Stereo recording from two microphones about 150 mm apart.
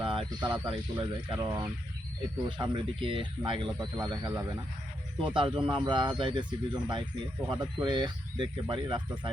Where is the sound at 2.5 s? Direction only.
35° right (ahead or behind).